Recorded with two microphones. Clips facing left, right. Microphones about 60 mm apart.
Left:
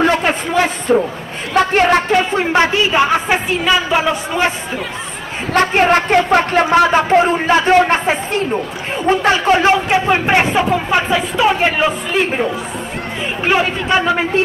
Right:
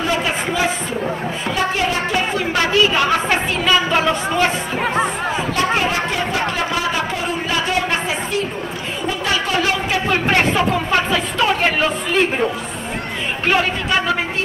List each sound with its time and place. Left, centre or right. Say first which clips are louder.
0.0 s a sound: left 5 dB; left
2.3 s a woman's voice: left 3 dB; left; by 4.2 s centre
5.5 s speech: left 9 dB; left; by 12.4 s centre